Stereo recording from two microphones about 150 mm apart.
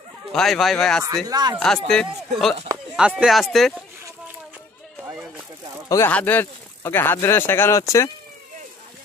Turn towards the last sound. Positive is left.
turn(degrees=15)  # may be behind; listen again after turning